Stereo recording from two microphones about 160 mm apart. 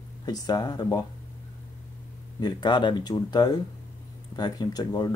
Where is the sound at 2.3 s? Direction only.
25° left (ahead or behind).